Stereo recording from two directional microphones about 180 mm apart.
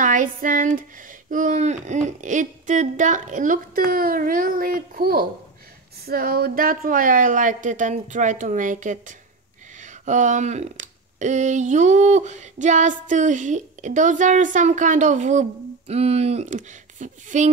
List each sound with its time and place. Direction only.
0.0 s speech: 50° right (ahead or behind)